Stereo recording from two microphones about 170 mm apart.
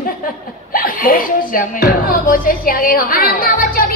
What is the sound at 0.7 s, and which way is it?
Speech, 55° left (ahead or behind).